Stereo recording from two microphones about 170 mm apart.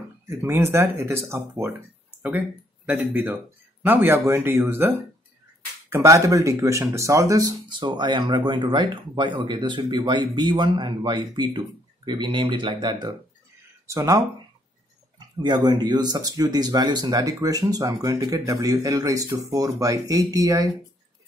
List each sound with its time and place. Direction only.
0.3 s speech: 15° right (ahead or behind)
2.9 s speech: 10° right (ahead or behind)